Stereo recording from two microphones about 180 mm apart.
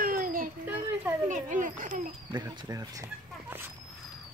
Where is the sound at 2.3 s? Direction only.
20° right (ahead or behind).